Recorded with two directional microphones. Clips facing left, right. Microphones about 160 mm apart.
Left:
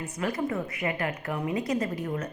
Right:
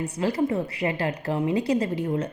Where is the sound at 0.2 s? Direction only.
30° right (ahead or behind).